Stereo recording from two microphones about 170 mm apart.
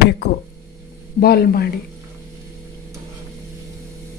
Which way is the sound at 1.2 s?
65° left (ahead or behind).